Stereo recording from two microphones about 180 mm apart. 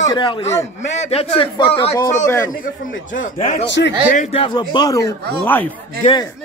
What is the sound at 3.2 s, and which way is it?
A man's voice, 40° left (ahead or behind).